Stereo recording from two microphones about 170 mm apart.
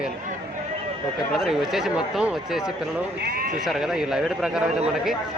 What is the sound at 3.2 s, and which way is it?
Speech, 60° right (ahead or behind).